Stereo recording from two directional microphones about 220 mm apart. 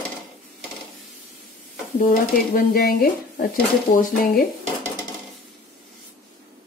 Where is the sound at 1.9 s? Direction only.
40° left (ahead or behind).